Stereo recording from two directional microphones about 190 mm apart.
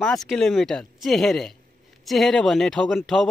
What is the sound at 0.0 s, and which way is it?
A man's voice, centre (ahead or behind).